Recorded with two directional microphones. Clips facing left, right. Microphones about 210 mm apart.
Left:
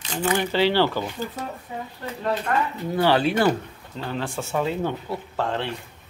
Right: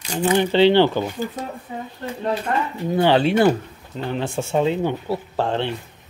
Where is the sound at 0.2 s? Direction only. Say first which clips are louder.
Right 6 dB; 20° right (ahead or behind).